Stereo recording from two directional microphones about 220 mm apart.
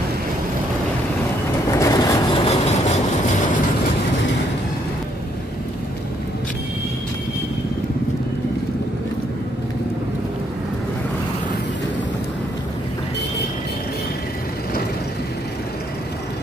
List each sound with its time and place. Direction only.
1.7 s vehicle: 15° left (ahead or behind)